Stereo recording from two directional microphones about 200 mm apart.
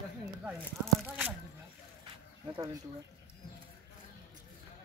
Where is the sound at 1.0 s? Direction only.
Centre (ahead or behind).